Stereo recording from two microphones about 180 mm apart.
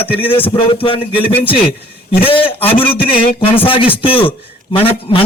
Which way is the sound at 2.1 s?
30° left (ahead or behind).